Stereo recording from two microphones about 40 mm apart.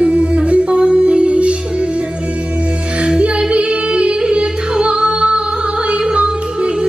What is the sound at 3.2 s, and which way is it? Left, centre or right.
Female singing, right.